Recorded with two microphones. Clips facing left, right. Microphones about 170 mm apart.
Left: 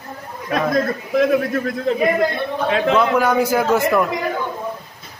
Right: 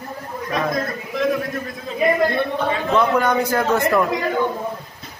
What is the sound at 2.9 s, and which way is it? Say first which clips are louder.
A man's voice: right 1 dB; 5° left (ahead or behind).